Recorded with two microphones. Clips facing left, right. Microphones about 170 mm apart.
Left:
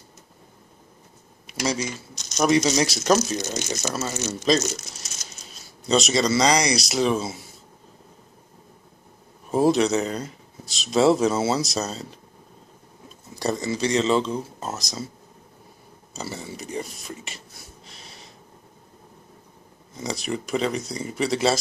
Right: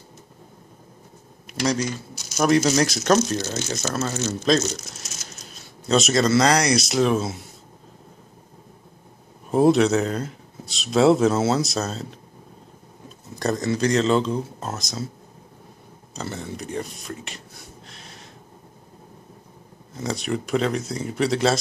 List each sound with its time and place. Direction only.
1.5 s speech: centre (ahead or behind)
3.3 s speech: 15° left (ahead or behind)
4.7 s speech: centre (ahead or behind)
9.5 s speech: centre (ahead or behind)
13.4 s speech: centre (ahead or behind)
16.1 s speech: 5° left (ahead or behind)
17.8 s gasp: centre (ahead or behind)
19.9 s speech: centre (ahead or behind)